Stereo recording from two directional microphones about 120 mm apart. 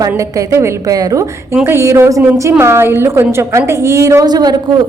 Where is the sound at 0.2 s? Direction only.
25° right (ahead or behind).